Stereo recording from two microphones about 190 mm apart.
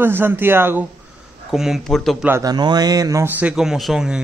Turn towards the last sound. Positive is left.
turn(degrees=0)  # may be behind; listen again after turning